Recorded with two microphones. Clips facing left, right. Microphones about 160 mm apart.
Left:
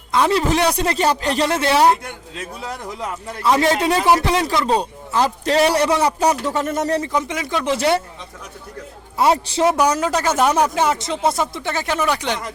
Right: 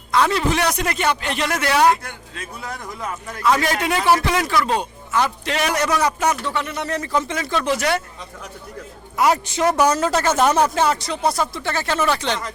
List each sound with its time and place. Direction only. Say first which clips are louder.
0.1 s a man's voice: left 2 dB; 25° left (ahead or behind)
3.3 s a man's voice: left 3 dB; 25° left (ahead or behind)
7.0 s speech: even; 15° left (ahead or behind)
9.1 s speech: left 2 dB; 30° left (ahead or behind)
9.8 s speech: even; 10° left (ahead or behind)